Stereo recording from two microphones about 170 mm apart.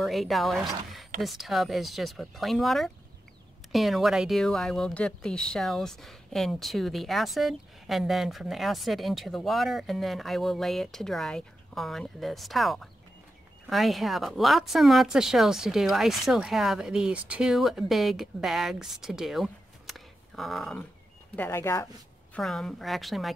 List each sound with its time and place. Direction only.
0.0 s speech: centre (ahead or behind)
21.4 s speech: 15° left (ahead or behind)
22.3 s speech: 5° left (ahead or behind)